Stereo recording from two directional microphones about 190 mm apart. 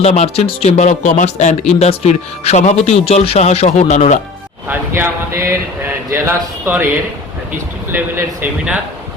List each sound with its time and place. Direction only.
0.0 s a man's voice: 35° left (ahead or behind)
4.7 s speech: 10° right (ahead or behind)
7.9 s speech: 10° right (ahead or behind)